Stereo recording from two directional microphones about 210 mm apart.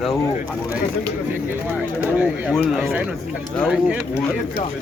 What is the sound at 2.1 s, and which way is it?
Speech, 5° right (ahead or behind).